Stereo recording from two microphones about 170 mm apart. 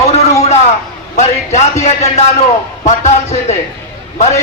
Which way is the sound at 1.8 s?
40° left (ahead or behind).